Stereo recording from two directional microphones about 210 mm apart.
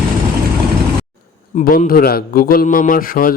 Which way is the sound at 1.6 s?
45° left (ahead or behind).